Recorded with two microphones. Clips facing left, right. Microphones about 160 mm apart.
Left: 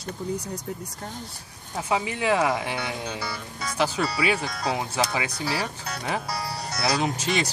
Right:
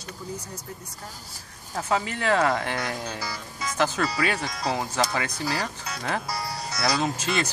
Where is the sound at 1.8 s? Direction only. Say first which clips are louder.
Even; 10° left (ahead or behind).